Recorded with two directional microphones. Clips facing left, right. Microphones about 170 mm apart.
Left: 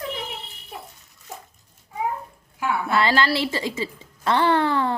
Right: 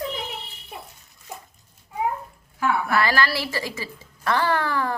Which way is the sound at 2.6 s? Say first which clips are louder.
Even; 25° left (ahead or behind).